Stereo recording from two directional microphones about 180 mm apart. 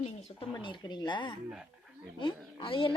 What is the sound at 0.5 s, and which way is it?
A woman's voice, 25° left (ahead or behind).